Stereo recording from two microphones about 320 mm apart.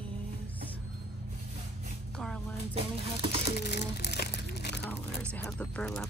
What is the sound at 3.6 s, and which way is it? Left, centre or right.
Crumpling, left.